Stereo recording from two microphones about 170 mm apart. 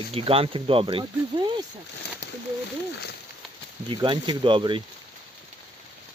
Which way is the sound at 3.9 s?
30° right (ahead or behind).